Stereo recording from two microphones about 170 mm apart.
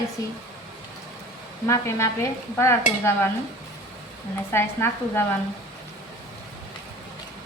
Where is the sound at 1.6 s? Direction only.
15° left (ahead or behind).